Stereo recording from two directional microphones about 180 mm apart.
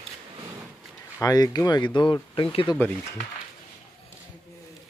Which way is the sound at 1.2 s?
20° left (ahead or behind).